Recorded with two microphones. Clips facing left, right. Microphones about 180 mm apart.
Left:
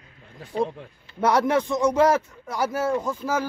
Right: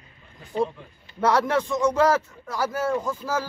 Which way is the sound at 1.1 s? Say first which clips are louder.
Left 1 dB; 15° left (ahead or behind).